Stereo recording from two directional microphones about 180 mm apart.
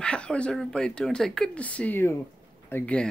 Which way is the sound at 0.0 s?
5° left (ahead or behind).